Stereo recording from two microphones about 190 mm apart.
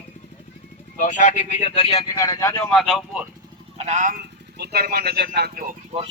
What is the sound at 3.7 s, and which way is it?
Speech, 40° right (ahead or behind).